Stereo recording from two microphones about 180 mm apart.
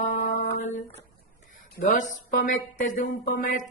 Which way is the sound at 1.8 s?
45° left (ahead or behind).